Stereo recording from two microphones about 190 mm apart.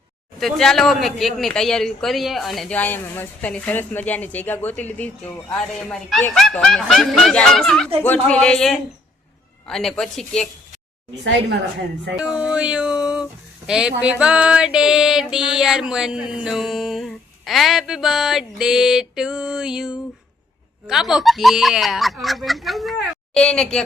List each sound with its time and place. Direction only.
0.3 s speech: centre (ahead or behind)
11.2 s a woman's voice: 65° right (ahead or behind)
12.1 s speech: 5° right (ahead or behind)